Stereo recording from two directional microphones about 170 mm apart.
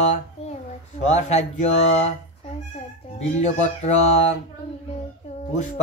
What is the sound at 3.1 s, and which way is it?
Speech, 40° left (ahead or behind).